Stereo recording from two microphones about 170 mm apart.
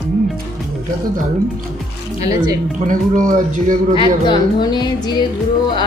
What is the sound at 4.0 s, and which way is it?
A woman's voice, 25° left (ahead or behind).